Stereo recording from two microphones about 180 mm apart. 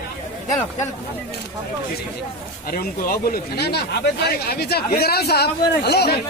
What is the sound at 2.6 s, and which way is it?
Speech, 55° left (ahead or behind).